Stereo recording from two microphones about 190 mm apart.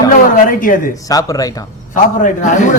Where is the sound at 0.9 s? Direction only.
20° left (ahead or behind).